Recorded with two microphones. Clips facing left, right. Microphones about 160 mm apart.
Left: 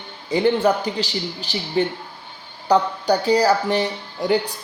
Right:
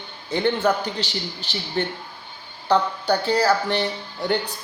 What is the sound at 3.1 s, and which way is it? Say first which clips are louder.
Speech: left 3 dB; 10° left (ahead or behind).